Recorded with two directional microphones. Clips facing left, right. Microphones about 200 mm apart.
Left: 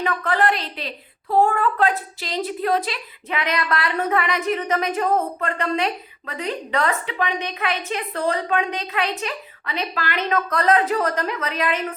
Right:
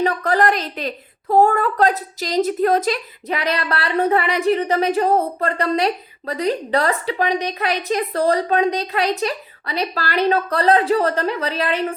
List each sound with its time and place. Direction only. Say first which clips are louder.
0.0 s a woman's voice: right 4 dB; 35° right (ahead or behind)